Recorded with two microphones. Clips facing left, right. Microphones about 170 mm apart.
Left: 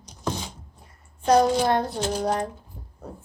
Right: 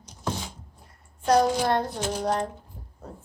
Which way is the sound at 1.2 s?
20° left (ahead or behind).